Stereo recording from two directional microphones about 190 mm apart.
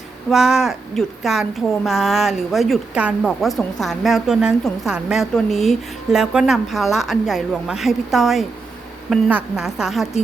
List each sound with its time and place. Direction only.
0.3 s a woman's voice: 5° right (ahead or behind)